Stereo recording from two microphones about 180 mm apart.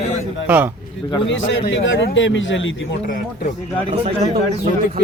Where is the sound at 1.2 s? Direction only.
90° left.